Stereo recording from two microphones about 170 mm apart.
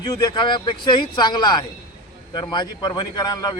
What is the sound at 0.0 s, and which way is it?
A man's voice, 25° left (ahead or behind).